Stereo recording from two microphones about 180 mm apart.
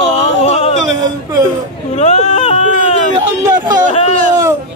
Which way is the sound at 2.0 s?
35° left (ahead or behind).